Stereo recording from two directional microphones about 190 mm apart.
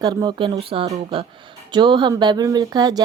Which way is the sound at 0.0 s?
20° right (ahead or behind).